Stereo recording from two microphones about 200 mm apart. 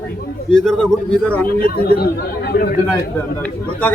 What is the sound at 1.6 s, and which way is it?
Speech, 50° left (ahead or behind).